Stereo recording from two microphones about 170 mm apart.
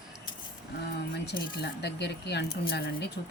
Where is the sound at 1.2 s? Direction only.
75° left (ahead or behind).